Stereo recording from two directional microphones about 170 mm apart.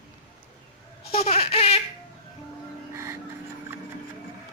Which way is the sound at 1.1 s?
35° left (ahead or behind).